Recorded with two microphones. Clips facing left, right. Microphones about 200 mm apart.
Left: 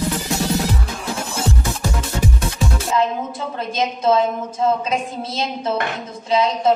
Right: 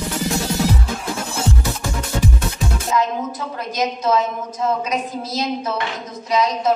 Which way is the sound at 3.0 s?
25° left (ahead or behind).